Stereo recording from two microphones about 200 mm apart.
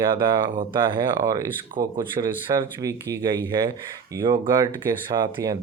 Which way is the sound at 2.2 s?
30° right (ahead or behind).